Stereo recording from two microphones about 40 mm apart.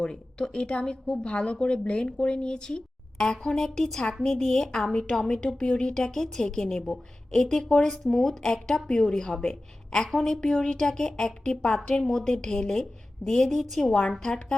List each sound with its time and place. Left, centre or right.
0.0 s a woman's voice: centre
7.9 s a woman's voice: centre
10.1 s a woman's voice: centre
14.2 s a woman's voice: centre